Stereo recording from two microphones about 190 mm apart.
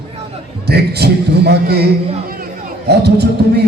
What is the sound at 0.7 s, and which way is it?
A man's voice, 60° right (ahead or behind).